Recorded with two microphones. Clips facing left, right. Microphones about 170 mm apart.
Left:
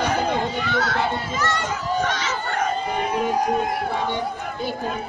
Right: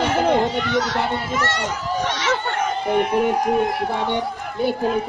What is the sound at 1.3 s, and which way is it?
Speech, 70° right (ahead or behind).